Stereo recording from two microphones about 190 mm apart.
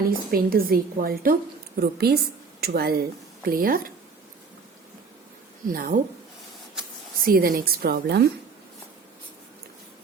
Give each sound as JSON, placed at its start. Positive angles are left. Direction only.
{"t": 0.1, "sound": "a woman's voice", "side_deg": -50}
{"t": 5.6, "sound": "a woman's voice", "side_deg": -50}
{"t": 7.3, "sound": "a woman's voice", "side_deg": -50}